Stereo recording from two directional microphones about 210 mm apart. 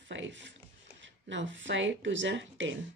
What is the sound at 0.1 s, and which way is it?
A woman's voice, 60° right (ahead or behind).